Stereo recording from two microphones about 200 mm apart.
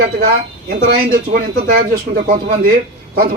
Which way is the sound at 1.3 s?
45° right (ahead or behind).